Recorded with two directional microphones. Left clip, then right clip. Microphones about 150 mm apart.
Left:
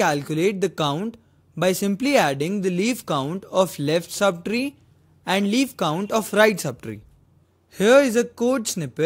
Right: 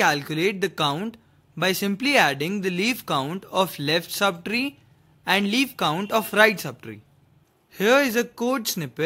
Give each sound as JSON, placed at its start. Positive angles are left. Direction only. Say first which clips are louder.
{"t": 0.0, "sound": "speech", "louder": "left 1 dB", "side_deg": 30}
{"t": 0.9, "sound": "a sound", "louder": "left 2 dB", "side_deg": 20}
{"t": 1.6, "sound": "speech", "louder": "left 2 dB", "side_deg": 30}